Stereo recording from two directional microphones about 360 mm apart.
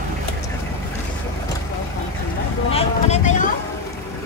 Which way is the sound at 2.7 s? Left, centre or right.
Centre.